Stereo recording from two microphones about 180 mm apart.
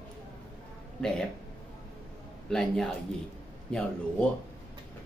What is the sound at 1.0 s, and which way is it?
Speech, 5° left (ahead or behind).